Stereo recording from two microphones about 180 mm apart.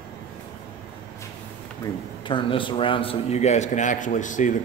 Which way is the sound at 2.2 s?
25° left (ahead or behind).